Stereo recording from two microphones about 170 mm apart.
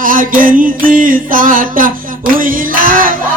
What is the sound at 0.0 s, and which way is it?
Music, 55° right (ahead or behind).